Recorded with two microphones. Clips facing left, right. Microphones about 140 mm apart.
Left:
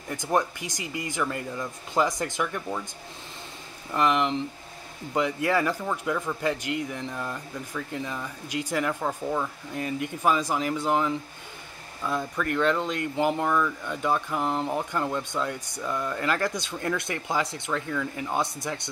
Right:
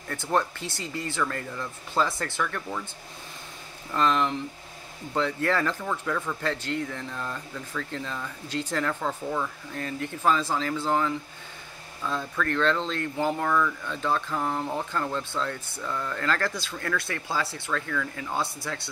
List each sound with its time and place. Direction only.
0.1 s speech: 15° left (ahead or behind)
3.9 s speech: 15° left (ahead or behind)